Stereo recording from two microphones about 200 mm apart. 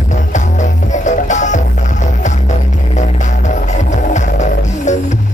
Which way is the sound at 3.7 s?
40° left (ahead or behind).